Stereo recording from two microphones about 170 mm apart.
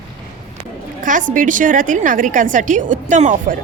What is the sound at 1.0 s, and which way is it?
A woman's voice, 50° right (ahead or behind).